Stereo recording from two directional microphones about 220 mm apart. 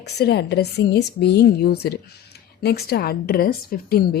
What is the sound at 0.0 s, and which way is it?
A woman's voice, 50° left (ahead or behind).